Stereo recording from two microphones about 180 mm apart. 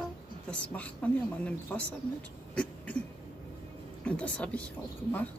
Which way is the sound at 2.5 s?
10° left (ahead or behind).